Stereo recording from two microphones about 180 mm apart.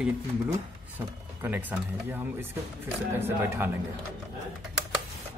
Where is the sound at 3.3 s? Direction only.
15° right (ahead or behind).